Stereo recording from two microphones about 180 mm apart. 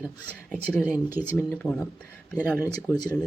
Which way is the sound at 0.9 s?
10° right (ahead or behind).